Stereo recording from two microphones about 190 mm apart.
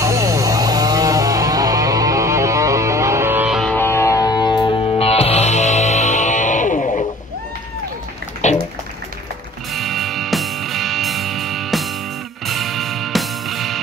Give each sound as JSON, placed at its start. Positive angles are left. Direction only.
{"t": 0.0, "sound": "music", "side_deg": -15}
{"t": 3.7, "sound": "music", "side_deg": 10}
{"t": 8.4, "sound": "a sound", "side_deg": 40}
{"t": 9.8, "sound": "music", "side_deg": 0}